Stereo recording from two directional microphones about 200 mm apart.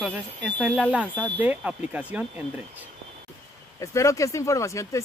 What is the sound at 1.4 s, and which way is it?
Speech, 10° right (ahead or behind).